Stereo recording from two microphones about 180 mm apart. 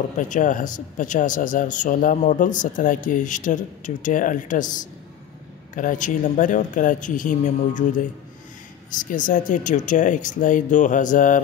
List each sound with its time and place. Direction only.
0.3 s speech: 45° left (ahead or behind)
5.8 s speech: 45° left (ahead or behind)
9.0 s speech: 45° left (ahead or behind)